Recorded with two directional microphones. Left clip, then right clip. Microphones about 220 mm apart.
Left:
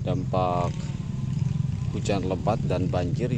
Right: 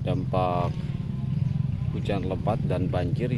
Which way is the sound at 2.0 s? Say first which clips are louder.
Left 2 dB; 15° left (ahead or behind).